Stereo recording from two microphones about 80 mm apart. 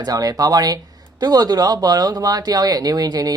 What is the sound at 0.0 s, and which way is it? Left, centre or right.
Speech, right.